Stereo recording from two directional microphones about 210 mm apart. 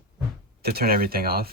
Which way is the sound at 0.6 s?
45° right (ahead or behind).